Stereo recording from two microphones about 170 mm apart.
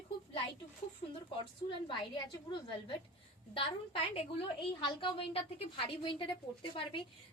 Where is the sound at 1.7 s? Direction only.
25° left (ahead or behind).